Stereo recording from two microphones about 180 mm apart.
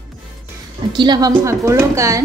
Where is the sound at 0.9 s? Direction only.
25° right (ahead or behind).